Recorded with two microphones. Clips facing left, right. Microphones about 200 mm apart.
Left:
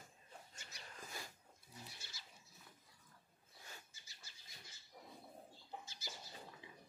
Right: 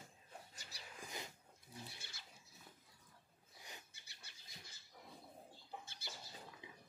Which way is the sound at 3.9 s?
60° right (ahead or behind).